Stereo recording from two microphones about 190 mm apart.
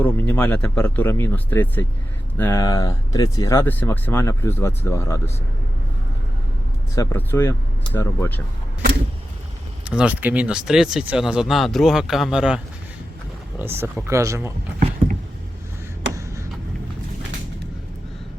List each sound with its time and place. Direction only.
0.0 s speech: 10° left (ahead or behind)
6.9 s speech: 15° left (ahead or behind)
9.9 s speech: 5° right (ahead or behind)
13.6 s speech: 10° right (ahead or behind)